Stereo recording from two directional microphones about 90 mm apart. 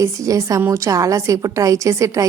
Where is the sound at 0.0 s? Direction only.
35° right (ahead or behind).